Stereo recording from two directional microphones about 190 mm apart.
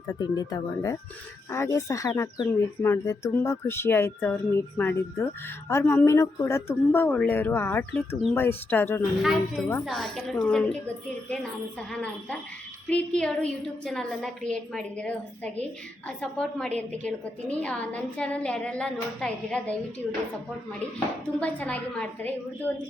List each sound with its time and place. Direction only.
0.2 s a woman's voice: 20° left (ahead or behind)
9.2 s a woman's voice: centre (ahead or behind)
21.3 s speech: 5° left (ahead or behind)